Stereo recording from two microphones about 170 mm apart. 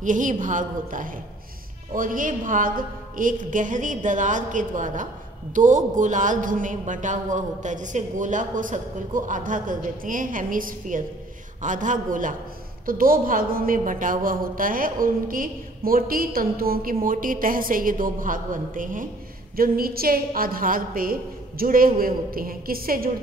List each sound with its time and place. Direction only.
0.0 s a man's voice: 50° right (ahead or behind)